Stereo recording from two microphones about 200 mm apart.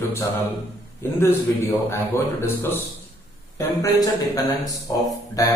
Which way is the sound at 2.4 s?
10° left (ahead or behind).